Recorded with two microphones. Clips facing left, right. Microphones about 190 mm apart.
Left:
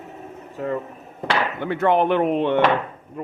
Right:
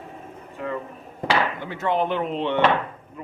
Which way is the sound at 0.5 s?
40° left (ahead or behind).